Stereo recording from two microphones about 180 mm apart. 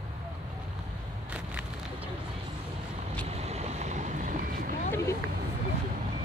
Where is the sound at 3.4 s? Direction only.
40° right (ahead or behind).